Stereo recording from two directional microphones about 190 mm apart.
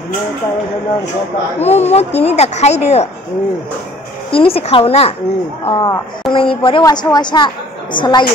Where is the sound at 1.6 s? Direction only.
35° left (ahead or behind).